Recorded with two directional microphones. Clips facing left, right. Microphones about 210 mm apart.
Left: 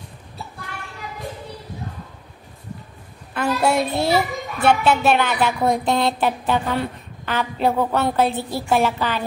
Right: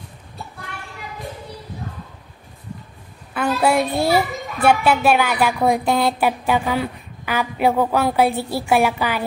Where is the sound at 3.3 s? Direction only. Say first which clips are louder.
Right 1 dB; 5° right (ahead or behind).